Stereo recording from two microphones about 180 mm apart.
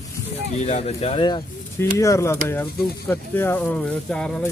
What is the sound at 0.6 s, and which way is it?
Speech, 40° left (ahead or behind).